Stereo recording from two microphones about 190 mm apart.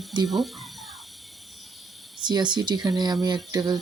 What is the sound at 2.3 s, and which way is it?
Speech, 25° right (ahead or behind).